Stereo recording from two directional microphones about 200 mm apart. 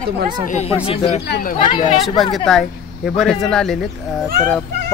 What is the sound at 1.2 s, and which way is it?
Speech, 55° left (ahead or behind).